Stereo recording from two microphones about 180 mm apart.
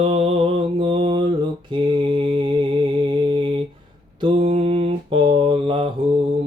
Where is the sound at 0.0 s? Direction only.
35° right (ahead or behind).